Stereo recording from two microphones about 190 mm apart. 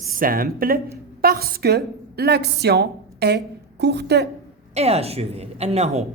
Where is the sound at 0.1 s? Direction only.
50° right (ahead or behind).